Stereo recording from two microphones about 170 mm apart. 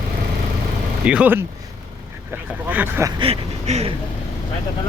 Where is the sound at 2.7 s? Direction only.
10° right (ahead or behind).